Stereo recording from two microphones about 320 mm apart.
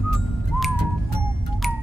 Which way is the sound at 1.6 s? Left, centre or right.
Centre.